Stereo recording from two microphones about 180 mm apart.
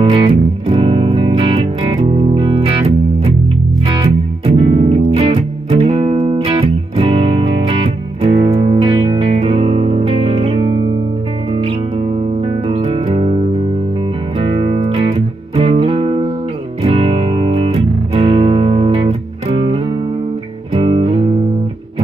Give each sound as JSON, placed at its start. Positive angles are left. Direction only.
{"t": 0.1, "sound": "music", "side_deg": -30}
{"t": 4.6, "sound": "music", "side_deg": -30}